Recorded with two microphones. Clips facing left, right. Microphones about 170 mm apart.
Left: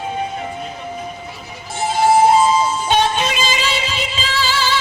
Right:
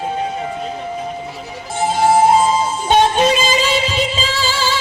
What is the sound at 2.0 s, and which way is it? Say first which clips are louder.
Music: even; 50° right (ahead or behind).